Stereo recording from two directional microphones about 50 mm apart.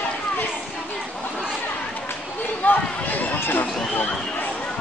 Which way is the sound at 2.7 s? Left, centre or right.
Left.